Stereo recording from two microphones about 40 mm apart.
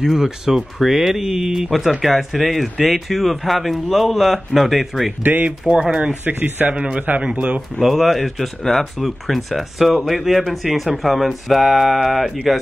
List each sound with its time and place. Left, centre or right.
0.0 s speech: centre
5.2 s a man's voice: right
6.7 s a man's voice: right
7.8 s speech: centre